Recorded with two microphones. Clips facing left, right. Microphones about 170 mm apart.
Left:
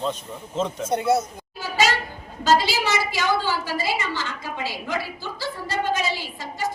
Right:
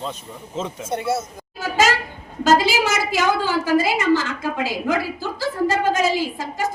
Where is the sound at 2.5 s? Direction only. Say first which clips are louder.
Right 3 dB; 45° right (ahead or behind).